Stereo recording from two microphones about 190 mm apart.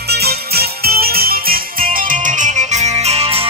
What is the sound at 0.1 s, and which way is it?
Music, 55° right (ahead or behind).